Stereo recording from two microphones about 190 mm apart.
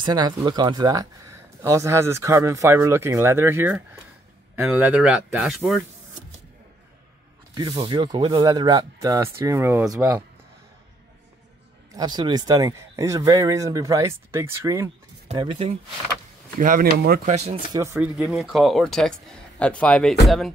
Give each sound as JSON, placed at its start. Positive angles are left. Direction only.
{"t": 0.0, "sound": "speech", "side_deg": -25}
{"t": 7.5, "sound": "speech", "side_deg": -25}
{"t": 12.0, "sound": "speech", "side_deg": -20}
{"t": 15.3, "sound": "speech", "side_deg": -25}
{"t": 16.5, "sound": "speech", "side_deg": -45}
{"t": 17.3, "sound": "speech", "side_deg": -35}
{"t": 17.9, "sound": "speech", "side_deg": -5}